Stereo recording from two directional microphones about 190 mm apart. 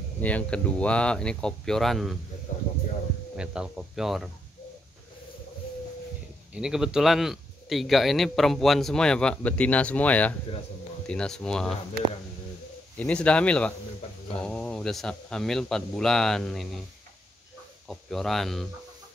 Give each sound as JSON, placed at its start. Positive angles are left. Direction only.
{"t": 0.2, "sound": "a man's voice", "side_deg": 5}
{"t": 2.5, "sound": "a sound", "side_deg": 40}
{"t": 3.3, "sound": "a man's voice", "side_deg": -5}
{"t": 6.5, "sound": "a man's voice", "side_deg": -5}
{"t": 13.0, "sound": "a man's voice", "side_deg": 5}
{"t": 17.8, "sound": "a man's voice", "side_deg": 0}